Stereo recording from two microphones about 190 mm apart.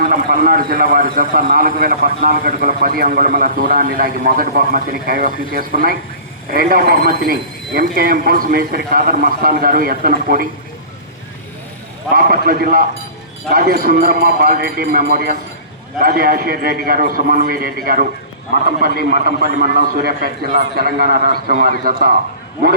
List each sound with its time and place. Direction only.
0.0 s a man's voice: 50° right (ahead or behind)
12.1 s a man's voice: 50° right (ahead or behind)